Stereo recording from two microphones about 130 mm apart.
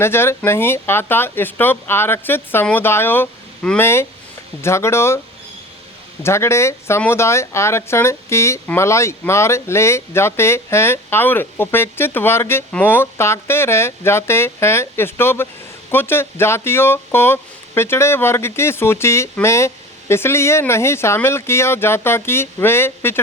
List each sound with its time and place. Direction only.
0.0 s speech: 20° left (ahead or behind)
6.2 s speech: 20° left (ahead or behind)